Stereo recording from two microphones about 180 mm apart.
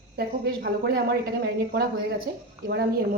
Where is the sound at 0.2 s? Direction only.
60° right (ahead or behind).